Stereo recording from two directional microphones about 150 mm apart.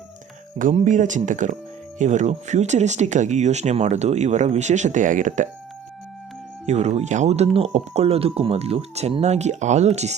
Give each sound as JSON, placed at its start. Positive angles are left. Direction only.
{"t": 0.6, "sound": "speech", "side_deg": -55}
{"t": 6.7, "sound": "speech", "side_deg": -50}